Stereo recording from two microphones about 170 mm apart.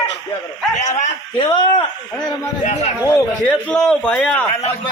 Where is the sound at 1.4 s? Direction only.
25° left (ahead or behind).